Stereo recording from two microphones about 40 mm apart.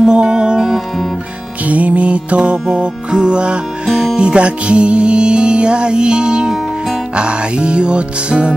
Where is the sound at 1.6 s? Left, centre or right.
Right.